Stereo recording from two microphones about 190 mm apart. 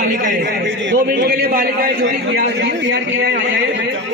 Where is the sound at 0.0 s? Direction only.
50° right (ahead or behind).